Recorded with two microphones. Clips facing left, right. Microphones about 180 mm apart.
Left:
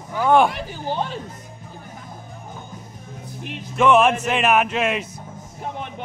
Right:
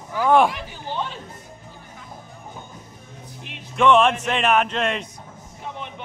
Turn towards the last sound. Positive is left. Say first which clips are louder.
# left 2 dB
turn(degrees=5)  # may be behind; listen again after turning